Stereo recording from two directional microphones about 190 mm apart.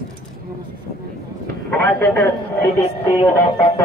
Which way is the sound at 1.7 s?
10° left (ahead or behind).